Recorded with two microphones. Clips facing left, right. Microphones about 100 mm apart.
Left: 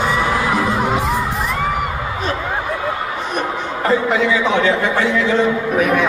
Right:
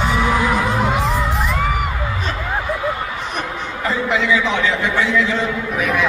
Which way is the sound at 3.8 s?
45° left (ahead or behind).